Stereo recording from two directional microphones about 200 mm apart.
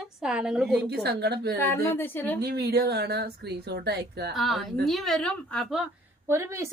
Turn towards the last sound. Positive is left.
turn(degrees=-15)  # may be behind; listen again after turning